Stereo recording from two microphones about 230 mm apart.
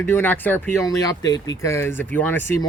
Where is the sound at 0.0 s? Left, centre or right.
Centre.